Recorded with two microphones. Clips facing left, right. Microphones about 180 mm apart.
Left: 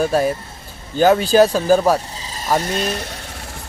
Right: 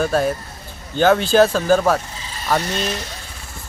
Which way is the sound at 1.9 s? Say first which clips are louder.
Left 2 dB; 35° left (ahead or behind).